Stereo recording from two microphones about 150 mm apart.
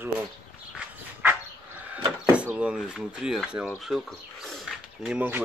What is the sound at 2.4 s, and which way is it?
Speech, 10° right (ahead or behind).